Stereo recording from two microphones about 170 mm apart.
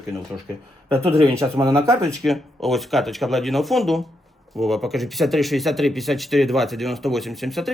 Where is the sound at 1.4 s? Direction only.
20° right (ahead or behind).